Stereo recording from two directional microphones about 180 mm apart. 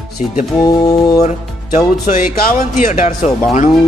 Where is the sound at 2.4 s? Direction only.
50° left (ahead or behind).